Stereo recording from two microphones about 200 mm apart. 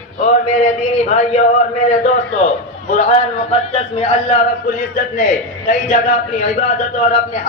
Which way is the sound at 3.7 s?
30° left (ahead or behind).